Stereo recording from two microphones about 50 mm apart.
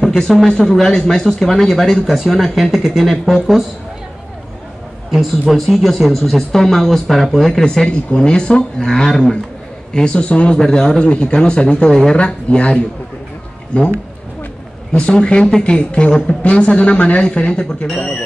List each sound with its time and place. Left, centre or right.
0.0 s speech: centre
5.5 s speech: centre
12.2 s speech: left